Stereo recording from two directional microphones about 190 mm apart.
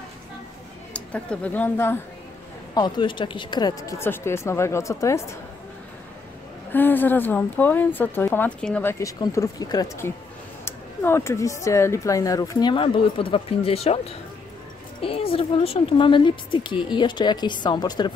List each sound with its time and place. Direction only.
0.9 s speech: 5° left (ahead or behind)
2.7 s speech: 25° left (ahead or behind)
6.7 s a woman's voice: 10° left (ahead or behind)